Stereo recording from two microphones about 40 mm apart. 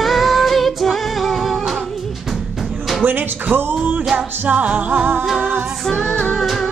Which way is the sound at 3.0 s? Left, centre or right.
Right.